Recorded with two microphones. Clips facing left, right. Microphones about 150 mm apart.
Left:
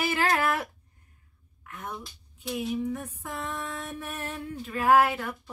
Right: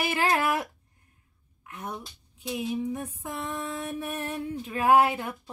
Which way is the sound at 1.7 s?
20° right (ahead or behind).